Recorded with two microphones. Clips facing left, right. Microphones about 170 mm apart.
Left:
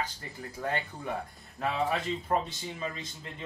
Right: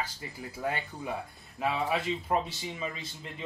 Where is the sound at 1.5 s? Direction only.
5° right (ahead or behind).